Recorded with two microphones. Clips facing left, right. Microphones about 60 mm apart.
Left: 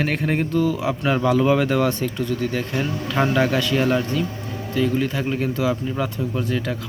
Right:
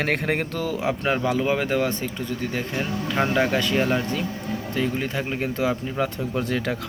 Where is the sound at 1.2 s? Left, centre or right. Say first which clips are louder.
Left 5 dB; centre.